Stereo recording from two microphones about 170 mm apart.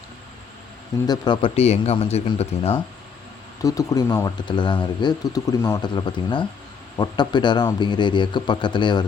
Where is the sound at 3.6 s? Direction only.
20° left (ahead or behind).